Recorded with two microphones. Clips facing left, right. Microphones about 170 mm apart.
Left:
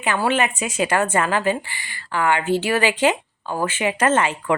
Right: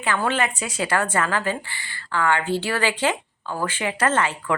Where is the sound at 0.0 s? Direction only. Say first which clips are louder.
Left 3 dB; 15° left (ahead or behind).